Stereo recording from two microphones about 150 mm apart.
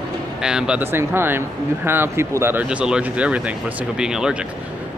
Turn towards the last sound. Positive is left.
turn(degrees=-5)  # may be behind; listen again after turning